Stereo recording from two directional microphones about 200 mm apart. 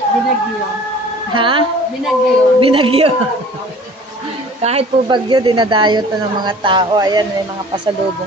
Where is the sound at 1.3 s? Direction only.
25° right (ahead or behind).